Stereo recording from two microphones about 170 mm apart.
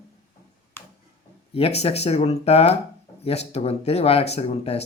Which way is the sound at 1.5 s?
35° left (ahead or behind).